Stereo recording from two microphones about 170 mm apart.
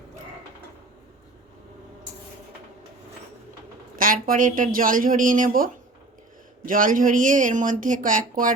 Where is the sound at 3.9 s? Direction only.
55° right (ahead or behind).